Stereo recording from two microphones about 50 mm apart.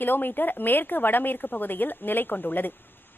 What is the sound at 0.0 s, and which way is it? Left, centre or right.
A woman's voice, left.